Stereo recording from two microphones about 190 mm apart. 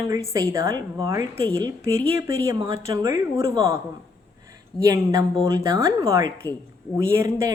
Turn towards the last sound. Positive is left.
turn(degrees=-15)  # may be behind; listen again after turning